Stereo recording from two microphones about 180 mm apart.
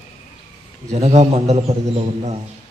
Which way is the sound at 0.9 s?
35° right (ahead or behind).